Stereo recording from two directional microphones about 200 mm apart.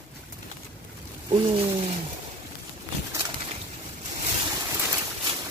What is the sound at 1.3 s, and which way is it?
Speech, 25° right (ahead or behind).